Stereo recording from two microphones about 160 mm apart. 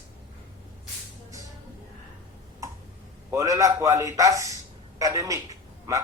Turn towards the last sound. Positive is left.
turn(degrees=-20)  # may be behind; listen again after turning